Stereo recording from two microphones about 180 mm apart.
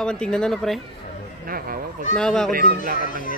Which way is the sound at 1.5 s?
55° right (ahead or behind).